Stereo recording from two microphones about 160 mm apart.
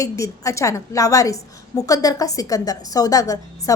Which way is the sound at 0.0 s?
20° left (ahead or behind).